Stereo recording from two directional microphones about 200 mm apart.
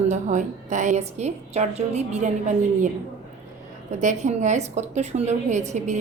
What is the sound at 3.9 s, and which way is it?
A woman's voice, 35° right (ahead or behind).